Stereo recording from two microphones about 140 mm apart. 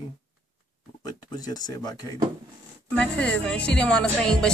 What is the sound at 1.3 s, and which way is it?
Speech, 25° left (ahead or behind).